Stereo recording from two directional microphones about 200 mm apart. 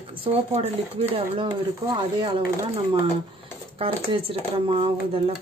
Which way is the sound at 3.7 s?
25° right (ahead or behind).